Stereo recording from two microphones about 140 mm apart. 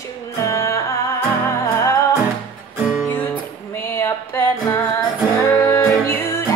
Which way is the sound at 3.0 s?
10° left (ahead or behind).